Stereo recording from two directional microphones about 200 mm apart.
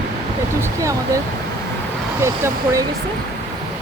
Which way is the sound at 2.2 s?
15° right (ahead or behind).